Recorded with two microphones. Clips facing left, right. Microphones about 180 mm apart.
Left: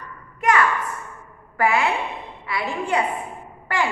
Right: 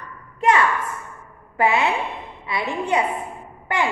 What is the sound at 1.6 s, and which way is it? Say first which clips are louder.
A woman's voice: right 1 dB; 20° right (ahead or behind).